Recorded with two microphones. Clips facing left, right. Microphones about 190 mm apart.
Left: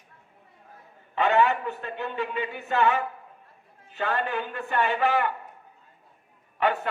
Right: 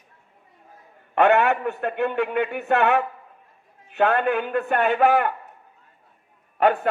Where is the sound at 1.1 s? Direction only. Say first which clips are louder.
Right 4 dB; 65° right (ahead or behind).